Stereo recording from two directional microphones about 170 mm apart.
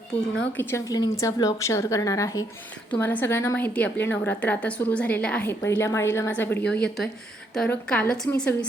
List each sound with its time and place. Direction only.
0.6 s a woman's voice: 15° left (ahead or behind)